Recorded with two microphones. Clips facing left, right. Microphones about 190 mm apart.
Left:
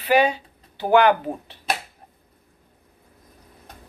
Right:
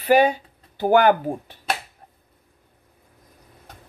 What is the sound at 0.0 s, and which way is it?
Speech, 50° right (ahead or behind).